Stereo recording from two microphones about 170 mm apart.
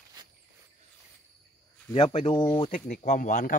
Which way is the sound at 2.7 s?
50° left (ahead or behind).